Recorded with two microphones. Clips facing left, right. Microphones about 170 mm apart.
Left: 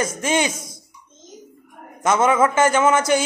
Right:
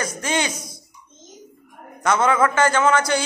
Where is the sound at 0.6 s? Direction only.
50° left (ahead or behind).